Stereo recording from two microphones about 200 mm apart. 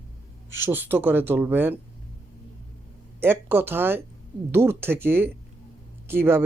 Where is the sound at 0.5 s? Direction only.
10° right (ahead or behind).